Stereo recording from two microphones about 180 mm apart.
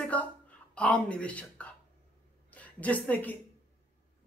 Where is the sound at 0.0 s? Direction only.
10° left (ahead or behind).